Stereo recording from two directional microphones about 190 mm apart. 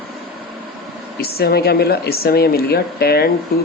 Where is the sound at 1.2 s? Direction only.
55° left (ahead or behind).